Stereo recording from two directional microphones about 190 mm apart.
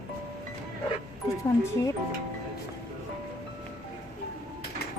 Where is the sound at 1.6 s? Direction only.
15° left (ahead or behind).